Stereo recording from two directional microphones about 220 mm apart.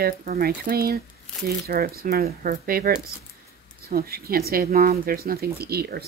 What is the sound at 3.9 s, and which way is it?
Speech, 45° right (ahead or behind).